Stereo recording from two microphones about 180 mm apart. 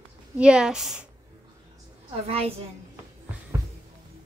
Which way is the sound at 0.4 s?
5° right (ahead or behind).